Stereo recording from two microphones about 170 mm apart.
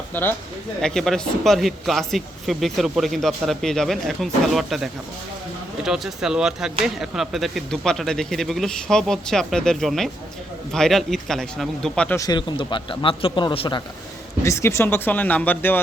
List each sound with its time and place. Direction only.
0.1 s speech: 10° left (ahead or behind)
12.2 s speech: 25° left (ahead or behind)
14.4 s speech: 15° left (ahead or behind)